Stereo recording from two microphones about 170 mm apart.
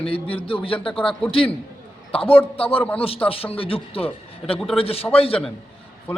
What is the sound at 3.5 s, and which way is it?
A man's voice, 35° left (ahead or behind).